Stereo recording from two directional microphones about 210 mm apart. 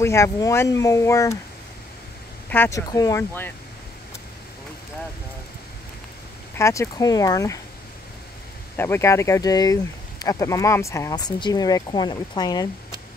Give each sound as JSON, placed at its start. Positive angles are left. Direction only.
{"t": 0.0, "sound": "speech", "side_deg": 15}
{"t": 2.5, "sound": "speech", "side_deg": 10}
{"t": 6.6, "sound": "speech", "side_deg": 15}
{"t": 8.7, "sound": "speech", "side_deg": 10}